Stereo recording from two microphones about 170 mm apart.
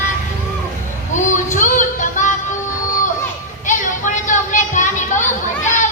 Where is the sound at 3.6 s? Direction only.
50° left (ahead or behind).